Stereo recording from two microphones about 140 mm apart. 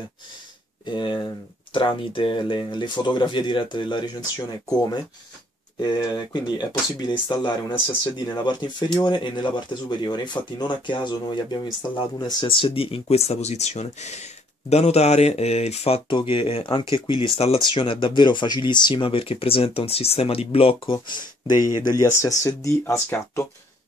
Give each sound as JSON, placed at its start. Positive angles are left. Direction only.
{"t": 0.8, "sound": "speech", "side_deg": 35}
{"t": 5.8, "sound": "speech", "side_deg": 30}